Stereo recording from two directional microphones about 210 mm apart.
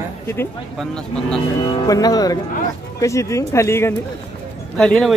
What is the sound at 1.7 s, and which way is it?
Speech, 20° left (ahead or behind).